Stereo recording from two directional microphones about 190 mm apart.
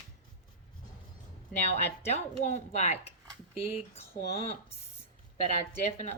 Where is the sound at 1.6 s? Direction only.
35° left (ahead or behind).